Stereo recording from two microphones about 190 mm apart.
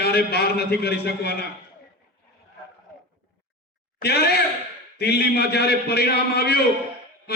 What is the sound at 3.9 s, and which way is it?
Speech, 55° left (ahead or behind).